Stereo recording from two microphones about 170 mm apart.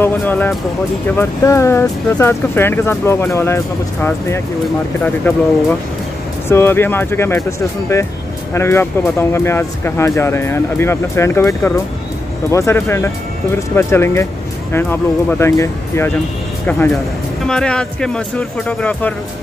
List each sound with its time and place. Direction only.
0.0 s speech: 10° left (ahead or behind)
8.5 s speech: 15° left (ahead or behind)